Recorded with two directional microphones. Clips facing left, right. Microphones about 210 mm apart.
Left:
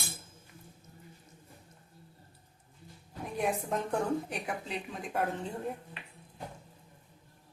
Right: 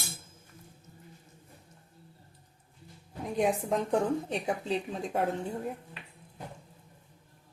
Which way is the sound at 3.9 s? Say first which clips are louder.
Right 2 dB; 25° right (ahead or behind).